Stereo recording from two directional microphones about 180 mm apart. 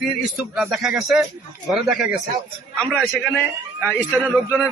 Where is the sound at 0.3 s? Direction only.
5° right (ahead or behind).